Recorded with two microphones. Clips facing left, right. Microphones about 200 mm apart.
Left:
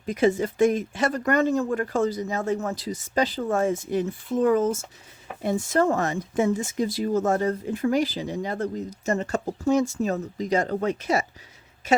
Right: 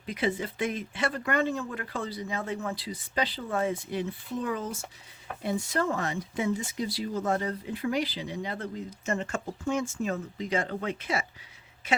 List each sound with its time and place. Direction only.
0.0 s a woman's voice: 45° left (ahead or behind)